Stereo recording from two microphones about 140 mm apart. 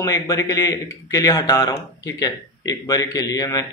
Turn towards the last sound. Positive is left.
turn(degrees=25)  # may be behind; listen again after turning